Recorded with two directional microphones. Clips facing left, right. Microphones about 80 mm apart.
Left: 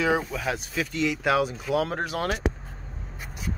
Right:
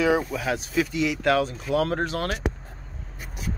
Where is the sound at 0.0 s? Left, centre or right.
Centre.